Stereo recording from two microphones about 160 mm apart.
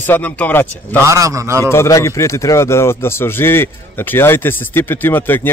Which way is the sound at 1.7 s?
20° left (ahead or behind).